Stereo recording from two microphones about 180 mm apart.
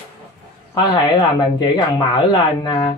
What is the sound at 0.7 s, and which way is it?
Speech, 20° left (ahead or behind).